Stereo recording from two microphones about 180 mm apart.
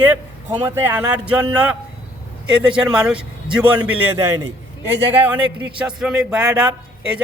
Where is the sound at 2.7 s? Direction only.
5° right (ahead or behind).